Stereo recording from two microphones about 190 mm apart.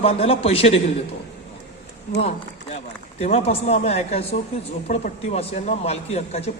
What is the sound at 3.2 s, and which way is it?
A man's voice, 35° left (ahead or behind).